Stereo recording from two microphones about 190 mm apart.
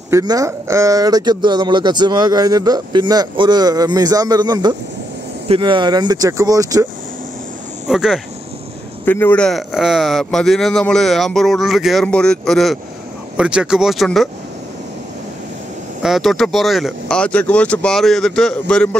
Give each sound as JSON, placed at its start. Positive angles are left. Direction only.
{"t": 0.1, "sound": "speech", "side_deg": -20}
{"t": 7.9, "sound": "a man's voice", "side_deg": 0}
{"t": 9.0, "sound": "a man's voice", "side_deg": 10}
{"t": 16.0, "sound": "a man's voice", "side_deg": 0}